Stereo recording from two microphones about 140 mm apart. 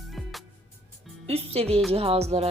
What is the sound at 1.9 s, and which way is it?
Speech, 45° right (ahead or behind).